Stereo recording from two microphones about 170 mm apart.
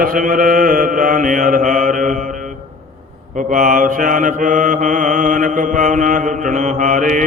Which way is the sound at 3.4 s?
50° right (ahead or behind).